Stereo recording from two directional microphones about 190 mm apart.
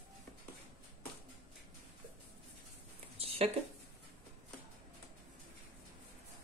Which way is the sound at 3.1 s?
30° right (ahead or behind).